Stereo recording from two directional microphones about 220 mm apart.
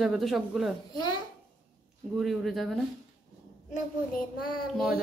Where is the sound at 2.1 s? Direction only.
Centre (ahead or behind).